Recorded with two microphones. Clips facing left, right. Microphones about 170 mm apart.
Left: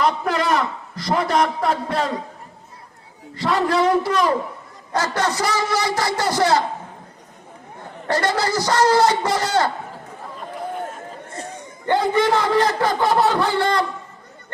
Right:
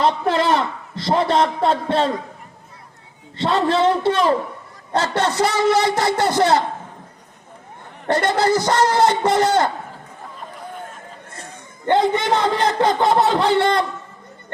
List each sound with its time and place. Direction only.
0.0 s a man's voice: 30° right (ahead or behind)
3.3 s a man's voice: 25° right (ahead or behind)
8.0 s a man's voice: 20° right (ahead or behind)
11.9 s a man's voice: 20° right (ahead or behind)